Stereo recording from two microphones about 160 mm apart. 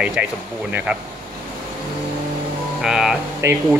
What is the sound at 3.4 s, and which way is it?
Speech, 15° right (ahead or behind).